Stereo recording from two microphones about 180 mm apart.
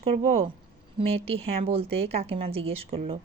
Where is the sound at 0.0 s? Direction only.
30° right (ahead or behind).